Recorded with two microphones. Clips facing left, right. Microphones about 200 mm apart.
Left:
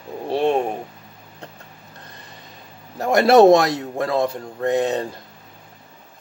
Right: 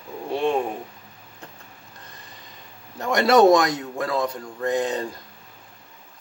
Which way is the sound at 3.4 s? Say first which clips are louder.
Left 3 dB; 30° left (ahead or behind).